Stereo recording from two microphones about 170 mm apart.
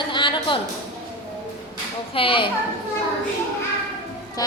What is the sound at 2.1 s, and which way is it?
Speech, 30° left (ahead or behind).